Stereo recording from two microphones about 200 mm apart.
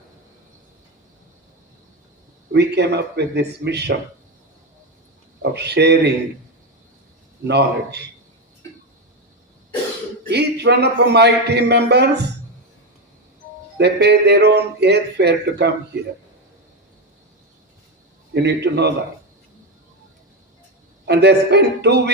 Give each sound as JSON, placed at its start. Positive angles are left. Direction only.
{"t": 2.5, "sound": "a man's voice", "side_deg": -60}
{"t": 5.4, "sound": "speech", "side_deg": -55}
{"t": 7.4, "sound": "a man's voice", "side_deg": -55}
{"t": 10.2, "sound": "a man's voice", "side_deg": -55}
{"t": 13.7, "sound": "a man's voice", "side_deg": -60}
{"t": 18.4, "sound": "a man's voice", "side_deg": -60}
{"t": 21.1, "sound": "a man's voice", "side_deg": -55}